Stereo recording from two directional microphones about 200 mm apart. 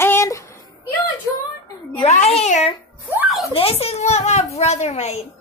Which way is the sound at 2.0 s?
35° left (ahead or behind).